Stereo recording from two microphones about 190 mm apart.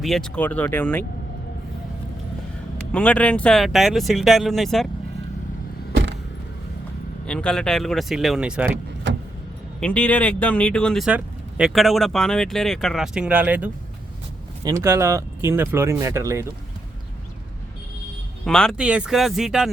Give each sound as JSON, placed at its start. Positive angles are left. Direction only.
{"t": 0.0, "sound": "speech", "side_deg": 0}
{"t": 2.9, "sound": "speech", "side_deg": 5}
{"t": 5.9, "sound": "vehicle", "side_deg": -70}
{"t": 7.3, "sound": "speech", "side_deg": 5}
{"t": 9.8, "sound": "speech", "side_deg": 5}
{"t": 18.4, "sound": "speech", "side_deg": 5}